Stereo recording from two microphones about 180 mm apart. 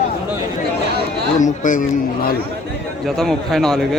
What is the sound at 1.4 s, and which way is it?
Speech, 45° left (ahead or behind).